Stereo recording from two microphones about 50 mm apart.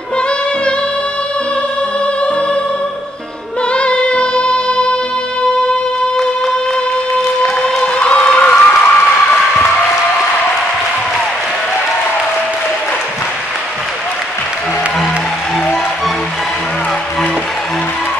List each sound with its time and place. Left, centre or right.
3.7 s music: left
7.4 s music: centre
8.8 s applause: left